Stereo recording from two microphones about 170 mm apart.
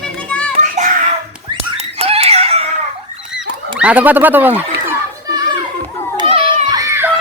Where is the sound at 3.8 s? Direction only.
10° right (ahead or behind).